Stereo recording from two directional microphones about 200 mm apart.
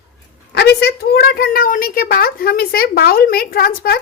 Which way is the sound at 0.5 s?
55° left (ahead or behind).